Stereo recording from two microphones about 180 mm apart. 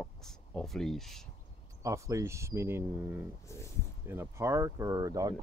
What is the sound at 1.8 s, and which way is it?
Speech, 15° right (ahead or behind).